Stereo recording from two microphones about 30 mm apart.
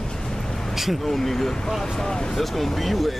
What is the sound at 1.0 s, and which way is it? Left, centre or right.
Speech, centre.